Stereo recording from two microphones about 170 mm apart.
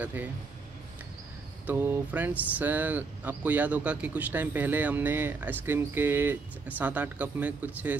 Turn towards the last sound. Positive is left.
turn(degrees=-10)  # may be behind; listen again after turning